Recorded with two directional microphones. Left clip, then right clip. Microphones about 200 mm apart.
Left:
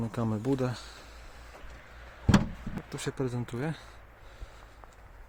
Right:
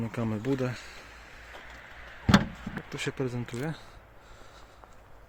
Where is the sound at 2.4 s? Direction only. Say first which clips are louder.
Right 2 dB; centre (ahead or behind).